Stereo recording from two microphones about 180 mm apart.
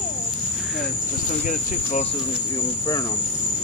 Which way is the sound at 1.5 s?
40° left (ahead or behind).